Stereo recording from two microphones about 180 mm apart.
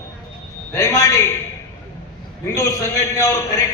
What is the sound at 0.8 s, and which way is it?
Speech, 20° left (ahead or behind).